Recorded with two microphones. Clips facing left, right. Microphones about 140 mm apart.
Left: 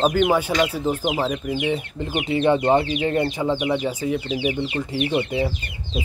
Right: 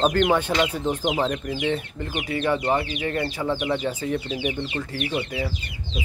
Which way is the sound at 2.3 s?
25° left (ahead or behind).